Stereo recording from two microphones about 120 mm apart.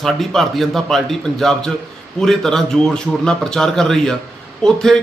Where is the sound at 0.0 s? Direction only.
Centre (ahead or behind).